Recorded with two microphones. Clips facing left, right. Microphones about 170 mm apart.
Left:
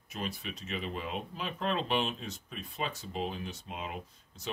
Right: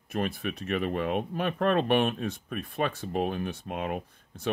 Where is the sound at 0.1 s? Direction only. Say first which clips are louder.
Right 8 dB; 55° right (ahead or behind).